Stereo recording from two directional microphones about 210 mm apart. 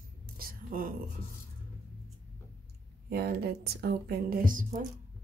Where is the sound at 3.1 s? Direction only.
50° right (ahead or behind).